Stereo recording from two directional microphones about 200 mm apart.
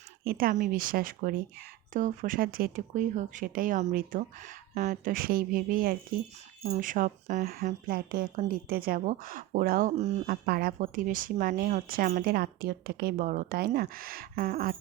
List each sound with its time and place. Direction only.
0.3 s a woman's voice: 45° right (ahead or behind)